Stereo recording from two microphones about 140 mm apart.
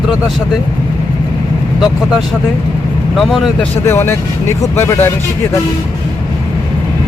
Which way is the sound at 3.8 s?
15° left (ahead or behind).